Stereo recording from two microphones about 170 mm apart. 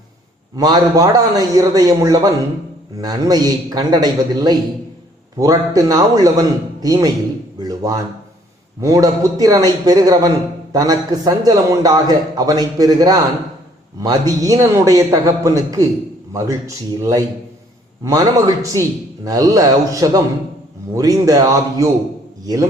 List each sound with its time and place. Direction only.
0.5 s a man's voice: 20° right (ahead or behind)